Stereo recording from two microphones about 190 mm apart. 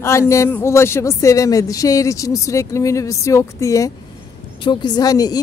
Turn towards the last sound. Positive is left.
turn(degrees=20)  # may be behind; listen again after turning